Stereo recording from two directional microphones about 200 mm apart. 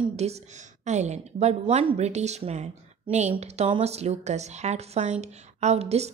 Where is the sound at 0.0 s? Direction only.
30° right (ahead or behind).